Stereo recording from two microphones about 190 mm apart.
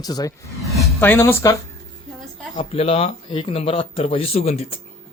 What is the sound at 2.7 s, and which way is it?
Speech, 30° left (ahead or behind).